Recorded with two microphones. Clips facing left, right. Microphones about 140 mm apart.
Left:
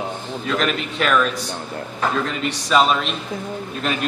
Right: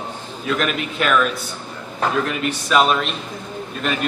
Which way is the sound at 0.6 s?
5° right (ahead or behind).